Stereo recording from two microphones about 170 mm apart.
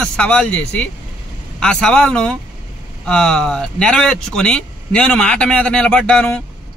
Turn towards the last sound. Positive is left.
turn(degrees=5)  # may be behind; listen again after turning